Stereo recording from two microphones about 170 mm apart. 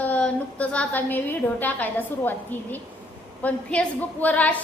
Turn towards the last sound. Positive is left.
turn(degrees=10)  # may be behind; listen again after turning